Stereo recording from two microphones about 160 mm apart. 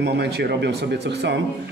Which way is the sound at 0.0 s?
90° right.